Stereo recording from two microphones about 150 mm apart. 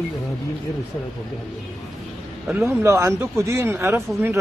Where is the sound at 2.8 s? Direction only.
20° right (ahead or behind).